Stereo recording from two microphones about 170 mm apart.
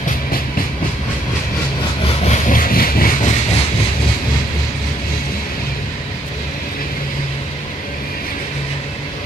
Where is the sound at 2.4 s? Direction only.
55° left (ahead or behind).